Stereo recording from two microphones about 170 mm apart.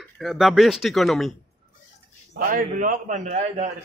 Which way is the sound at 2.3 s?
55° right (ahead or behind).